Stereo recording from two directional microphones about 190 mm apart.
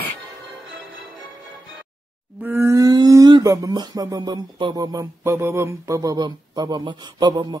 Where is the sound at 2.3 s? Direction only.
10° right (ahead or behind).